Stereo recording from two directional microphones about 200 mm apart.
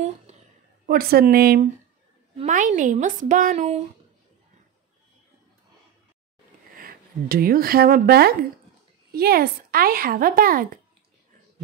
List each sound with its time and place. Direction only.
0.8 s speech: 45° right (ahead or behind)
2.3 s a woman's voice: 35° right (ahead or behind)
6.7 s speech: 45° right (ahead or behind)